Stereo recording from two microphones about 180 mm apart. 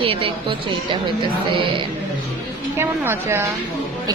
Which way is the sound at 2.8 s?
15° right (ahead or behind).